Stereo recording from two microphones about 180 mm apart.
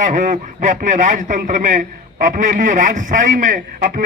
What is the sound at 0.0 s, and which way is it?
A man's voice, 45° right (ahead or behind).